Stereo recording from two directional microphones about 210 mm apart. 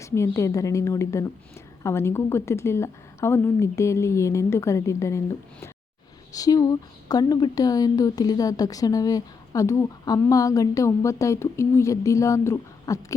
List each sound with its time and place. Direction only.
0.0 s speech: 15° left (ahead or behind)